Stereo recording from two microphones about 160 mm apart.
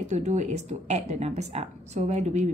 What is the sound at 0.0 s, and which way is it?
A woman's voice, 45° right (ahead or behind).